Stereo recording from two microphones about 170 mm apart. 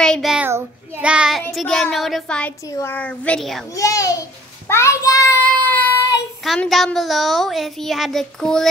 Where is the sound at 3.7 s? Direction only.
20° left (ahead or behind).